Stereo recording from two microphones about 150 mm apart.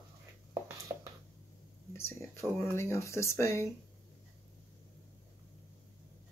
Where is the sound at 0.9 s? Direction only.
20° right (ahead or behind).